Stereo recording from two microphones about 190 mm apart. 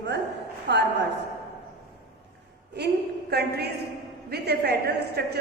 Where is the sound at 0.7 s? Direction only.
65° right (ahead or behind).